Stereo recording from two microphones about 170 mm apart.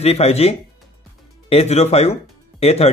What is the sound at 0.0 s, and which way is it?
A man's voice, 35° left (ahead or behind).